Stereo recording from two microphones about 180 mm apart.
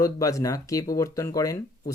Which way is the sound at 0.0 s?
20° left (ahead or behind).